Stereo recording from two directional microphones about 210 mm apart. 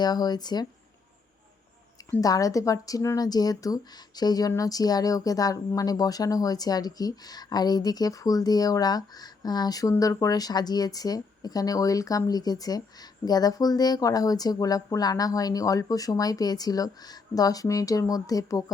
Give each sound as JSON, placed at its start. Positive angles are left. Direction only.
{"t": 0.0, "sound": "speech", "side_deg": 20}
{"t": 2.0, "sound": "speech", "side_deg": 15}